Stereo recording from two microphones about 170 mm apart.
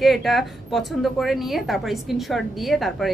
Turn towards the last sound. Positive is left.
turn(degrees=0)  # may be behind; listen again after turning